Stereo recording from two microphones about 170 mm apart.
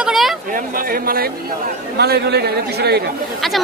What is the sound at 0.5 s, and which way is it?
Speech, 60° right (ahead or behind).